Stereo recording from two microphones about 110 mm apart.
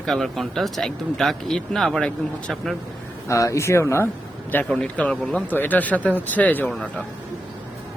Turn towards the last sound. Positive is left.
turn(degrees=10)  # may be behind; listen again after turning